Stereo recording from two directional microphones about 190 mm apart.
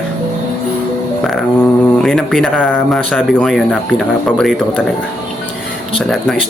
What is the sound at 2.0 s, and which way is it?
Speech, 5° left (ahead or behind).